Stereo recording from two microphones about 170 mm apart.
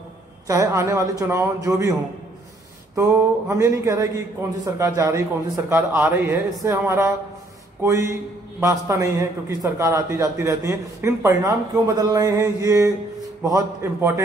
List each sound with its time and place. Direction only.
0.5 s a man's voice: 15° right (ahead or behind)
3.0 s a man's voice: 20° right (ahead or behind)